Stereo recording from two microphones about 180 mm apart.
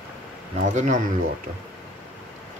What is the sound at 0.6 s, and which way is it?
Speech, 45° right (ahead or behind).